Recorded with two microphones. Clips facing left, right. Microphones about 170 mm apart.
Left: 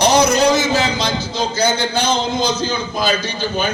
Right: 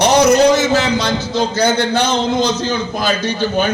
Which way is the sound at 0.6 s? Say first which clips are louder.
Right 3 dB; 65° right (ahead or behind).